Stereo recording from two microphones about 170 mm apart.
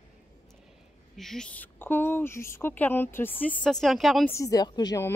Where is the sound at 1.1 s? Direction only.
Centre (ahead or behind).